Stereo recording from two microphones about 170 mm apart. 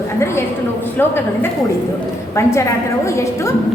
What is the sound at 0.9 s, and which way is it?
A woman's voice, 15° left (ahead or behind).